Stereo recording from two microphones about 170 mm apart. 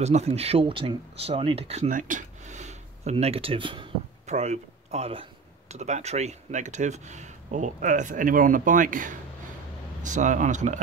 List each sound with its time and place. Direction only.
0.0 s speech: 40° right (ahead or behind)
1.9 s speech: 50° right (ahead or behind); by 3.9 s 30° right (ahead or behind)
4.3 s speech: 40° right (ahead or behind)